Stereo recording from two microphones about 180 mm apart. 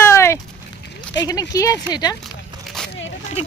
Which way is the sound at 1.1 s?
20° left (ahead or behind).